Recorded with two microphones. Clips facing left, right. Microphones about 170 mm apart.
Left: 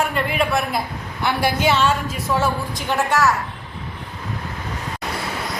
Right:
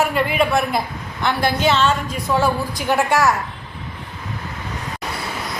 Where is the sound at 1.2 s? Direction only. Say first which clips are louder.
Right 1 dB; 10° left (ahead or behind).